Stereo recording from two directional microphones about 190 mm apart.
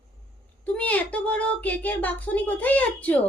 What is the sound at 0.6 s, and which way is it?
Speech, 10° left (ahead or behind).